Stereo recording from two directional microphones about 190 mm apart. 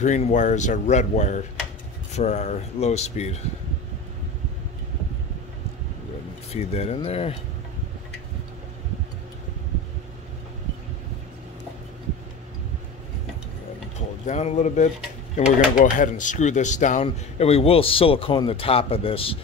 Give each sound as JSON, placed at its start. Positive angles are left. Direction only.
{"t": 0.0, "sound": "speech", "side_deg": 40}
{"t": 6.5, "sound": "speech", "side_deg": 35}
{"t": 14.2, "sound": "speech", "side_deg": 35}